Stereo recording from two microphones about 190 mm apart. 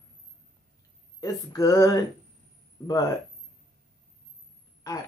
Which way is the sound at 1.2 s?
20° left (ahead or behind).